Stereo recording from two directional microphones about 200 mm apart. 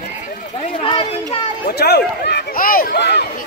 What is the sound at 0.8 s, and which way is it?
Speech, 25° left (ahead or behind).